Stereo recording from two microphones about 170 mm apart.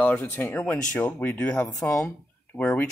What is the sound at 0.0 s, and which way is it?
Speech, 10° left (ahead or behind).